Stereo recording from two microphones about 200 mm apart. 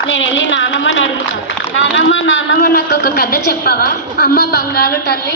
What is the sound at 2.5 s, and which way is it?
A woman's voice, 50° left (ahead or behind).